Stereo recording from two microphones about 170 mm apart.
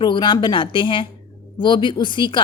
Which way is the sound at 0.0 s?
25° left (ahead or behind).